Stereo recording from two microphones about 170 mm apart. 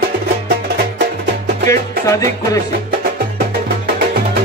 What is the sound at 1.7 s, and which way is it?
Music, 20° left (ahead or behind).